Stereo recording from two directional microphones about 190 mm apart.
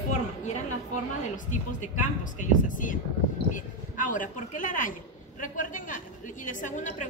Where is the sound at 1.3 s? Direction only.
40° left (ahead or behind).